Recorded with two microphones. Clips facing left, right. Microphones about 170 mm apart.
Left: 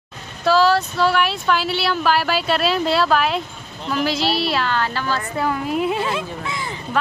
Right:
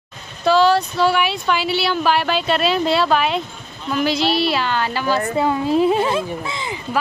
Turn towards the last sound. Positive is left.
turn(degrees=-30)  # may be behind; listen again after turning